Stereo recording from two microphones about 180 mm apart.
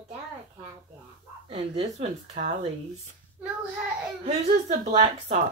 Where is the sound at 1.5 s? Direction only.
35° right (ahead or behind).